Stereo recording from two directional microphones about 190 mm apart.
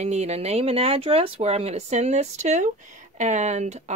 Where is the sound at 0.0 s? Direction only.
35° right (ahead or behind).